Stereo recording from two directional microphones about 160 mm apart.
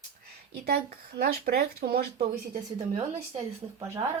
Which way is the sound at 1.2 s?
70° right (ahead or behind).